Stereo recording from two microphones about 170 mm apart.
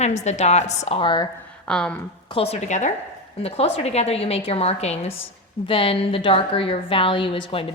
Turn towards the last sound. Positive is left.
turn(degrees=30)  # may be behind; listen again after turning